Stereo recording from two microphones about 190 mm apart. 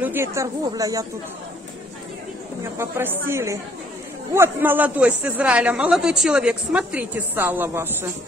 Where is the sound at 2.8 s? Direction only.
10° right (ahead or behind).